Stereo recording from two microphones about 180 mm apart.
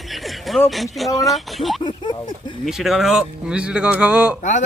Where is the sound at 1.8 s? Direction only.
25° left (ahead or behind).